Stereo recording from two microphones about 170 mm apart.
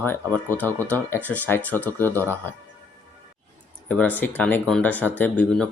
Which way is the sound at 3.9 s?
10° left (ahead or behind).